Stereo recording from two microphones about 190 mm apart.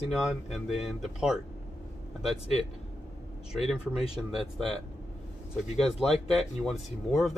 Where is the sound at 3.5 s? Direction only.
Centre (ahead or behind).